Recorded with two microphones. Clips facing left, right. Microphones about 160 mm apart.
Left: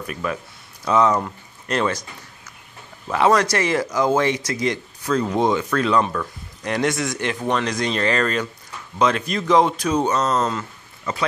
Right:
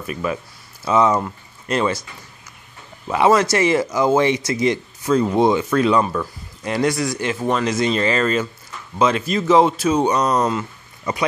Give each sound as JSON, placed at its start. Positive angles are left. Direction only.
{"t": 0.0, "sound": "speech", "side_deg": -5}
{"t": 3.1, "sound": "speech", "side_deg": -10}